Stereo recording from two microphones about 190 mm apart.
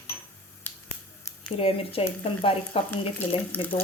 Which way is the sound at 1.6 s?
30° left (ahead or behind).